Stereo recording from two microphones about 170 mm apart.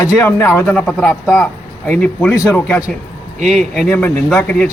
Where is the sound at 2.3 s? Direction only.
15° left (ahead or behind).